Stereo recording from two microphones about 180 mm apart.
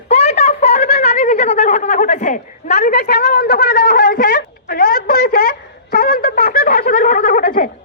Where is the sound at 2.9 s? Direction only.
60° left (ahead or behind).